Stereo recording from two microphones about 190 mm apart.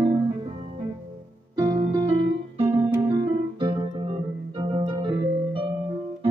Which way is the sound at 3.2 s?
25° right (ahead or behind).